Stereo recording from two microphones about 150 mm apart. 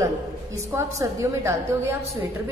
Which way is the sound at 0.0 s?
20° right (ahead or behind).